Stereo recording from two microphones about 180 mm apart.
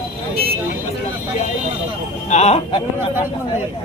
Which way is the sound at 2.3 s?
35° left (ahead or behind).